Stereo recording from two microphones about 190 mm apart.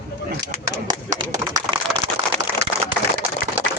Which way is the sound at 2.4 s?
15° right (ahead or behind).